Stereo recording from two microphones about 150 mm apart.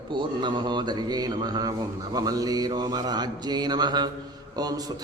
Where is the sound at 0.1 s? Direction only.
30° right (ahead or behind).